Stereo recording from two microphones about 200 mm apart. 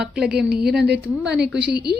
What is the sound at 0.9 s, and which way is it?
A woman's voice, 55° right (ahead or behind).